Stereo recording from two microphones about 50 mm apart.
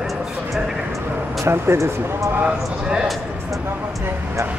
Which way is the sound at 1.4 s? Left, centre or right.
Right.